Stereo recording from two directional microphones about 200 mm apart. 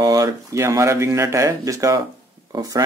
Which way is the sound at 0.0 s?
20° right (ahead or behind).